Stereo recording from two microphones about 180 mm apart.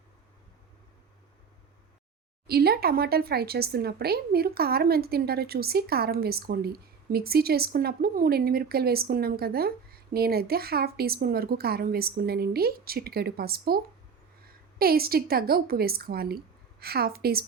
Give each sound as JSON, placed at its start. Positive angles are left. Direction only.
{"t": 2.5, "sound": "speech", "side_deg": -60}